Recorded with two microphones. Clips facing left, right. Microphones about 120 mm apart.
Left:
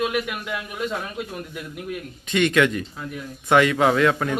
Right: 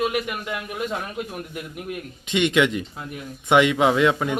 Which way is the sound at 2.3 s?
20° right (ahead or behind).